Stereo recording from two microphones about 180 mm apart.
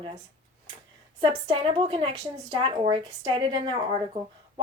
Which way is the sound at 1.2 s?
25° right (ahead or behind).